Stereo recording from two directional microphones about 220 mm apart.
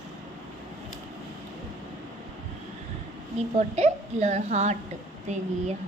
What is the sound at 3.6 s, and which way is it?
A child's voice, 30° right (ahead or behind).